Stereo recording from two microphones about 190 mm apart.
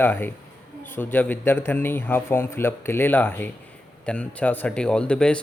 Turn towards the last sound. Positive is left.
turn(degrees=5)  # may be behind; listen again after turning